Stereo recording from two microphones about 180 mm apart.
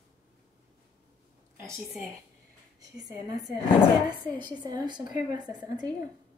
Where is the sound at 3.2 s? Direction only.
20° right (ahead or behind).